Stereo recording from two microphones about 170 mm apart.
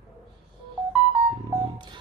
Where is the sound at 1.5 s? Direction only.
25° right (ahead or behind).